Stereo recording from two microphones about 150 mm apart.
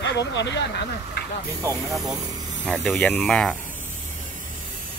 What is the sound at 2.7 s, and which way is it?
Speech, 5° left (ahead or behind).